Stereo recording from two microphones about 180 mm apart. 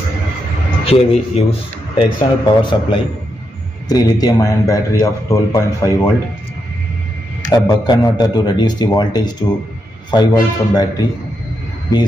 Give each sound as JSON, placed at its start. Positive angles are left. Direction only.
{"t": 0.8, "sound": "a man's voice", "side_deg": 35}
{"t": 7.4, "sound": "a man's voice", "side_deg": 20}